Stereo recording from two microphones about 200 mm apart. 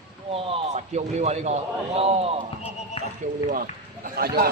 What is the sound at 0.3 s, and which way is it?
A man's voice, 30° right (ahead or behind).